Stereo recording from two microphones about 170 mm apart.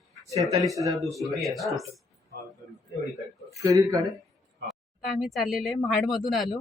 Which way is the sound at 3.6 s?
20° right (ahead or behind).